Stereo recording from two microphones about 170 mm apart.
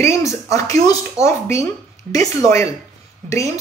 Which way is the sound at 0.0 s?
15° left (ahead or behind).